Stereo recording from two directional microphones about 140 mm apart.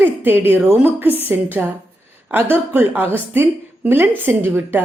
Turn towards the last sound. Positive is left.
turn(degrees=-15)  # may be behind; listen again after turning